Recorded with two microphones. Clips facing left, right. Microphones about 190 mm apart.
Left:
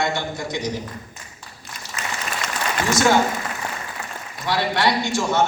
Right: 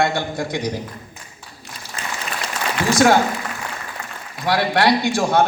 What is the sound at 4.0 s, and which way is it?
Applause, 5° left (ahead or behind).